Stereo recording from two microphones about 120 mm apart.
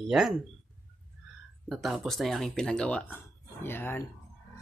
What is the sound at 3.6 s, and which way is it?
Speech, 20° left (ahead or behind).